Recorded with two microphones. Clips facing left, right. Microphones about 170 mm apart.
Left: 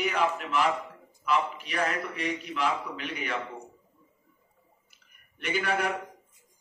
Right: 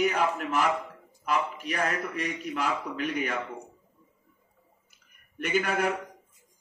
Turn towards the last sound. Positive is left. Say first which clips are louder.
# right 2 dB
turn(degrees=-45)  # may be behind; listen again after turning